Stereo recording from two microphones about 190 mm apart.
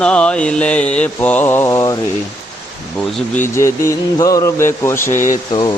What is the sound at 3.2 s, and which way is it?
Speech, 10° left (ahead or behind).